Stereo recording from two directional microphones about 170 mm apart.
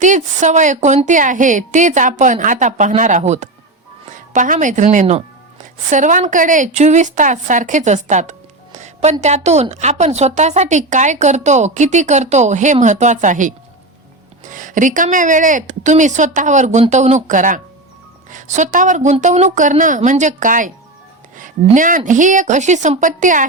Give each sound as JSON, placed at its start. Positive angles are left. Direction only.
{"t": 0.0, "sound": "a woman's voice", "side_deg": -45}